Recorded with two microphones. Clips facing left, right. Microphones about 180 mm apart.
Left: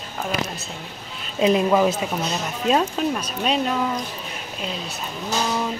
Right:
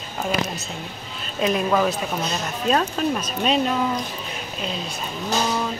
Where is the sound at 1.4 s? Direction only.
20° left (ahead or behind).